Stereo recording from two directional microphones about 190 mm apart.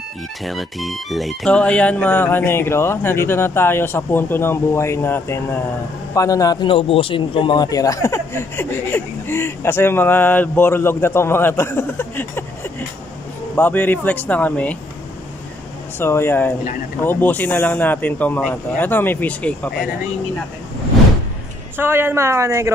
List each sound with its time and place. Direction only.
0.5 s a man's voice: centre (ahead or behind)
13.6 s a man's voice: 10° left (ahead or behind)
16.0 s a man's voice: 10° left (ahead or behind)
21.7 s a woman's voice: 10° right (ahead or behind)